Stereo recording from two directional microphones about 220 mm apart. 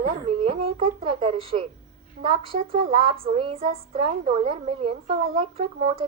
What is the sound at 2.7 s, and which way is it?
Speech, 25° right (ahead or behind).